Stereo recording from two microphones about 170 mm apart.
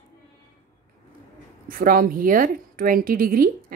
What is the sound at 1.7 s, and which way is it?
A woman's voice, 55° right (ahead or behind).